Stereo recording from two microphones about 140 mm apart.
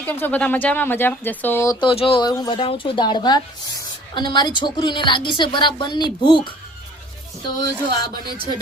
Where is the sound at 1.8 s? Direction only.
40° left (ahead or behind).